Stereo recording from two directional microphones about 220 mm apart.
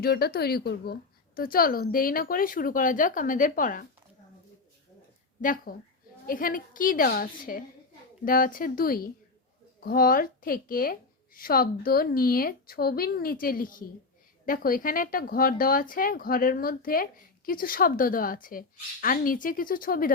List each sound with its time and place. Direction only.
0.0 s speech: 45° left (ahead or behind)
5.4 s speech: 35° left (ahead or behind)